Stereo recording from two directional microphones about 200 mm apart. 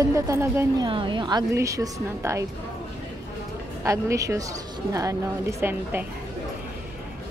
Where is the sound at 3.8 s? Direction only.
15° right (ahead or behind).